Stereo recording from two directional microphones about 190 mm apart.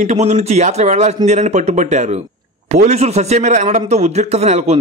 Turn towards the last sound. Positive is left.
turn(degrees=-35)  # may be behind; listen again after turning